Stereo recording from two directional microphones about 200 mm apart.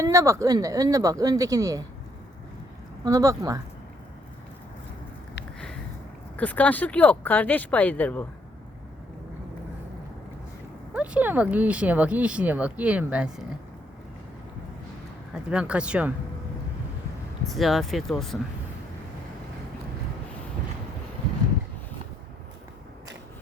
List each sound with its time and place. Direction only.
0.0 s speech: 15° right (ahead or behind)
3.0 s speech: 15° right (ahead or behind)
6.3 s speech: 10° left (ahead or behind)
10.9 s speech: 5° right (ahead or behind)
15.3 s speech: 5° right (ahead or behind)
17.5 s speech: centre (ahead or behind)